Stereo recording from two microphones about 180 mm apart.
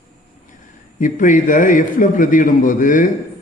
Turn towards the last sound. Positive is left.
turn(degrees=50)  # may be behind; listen again after turning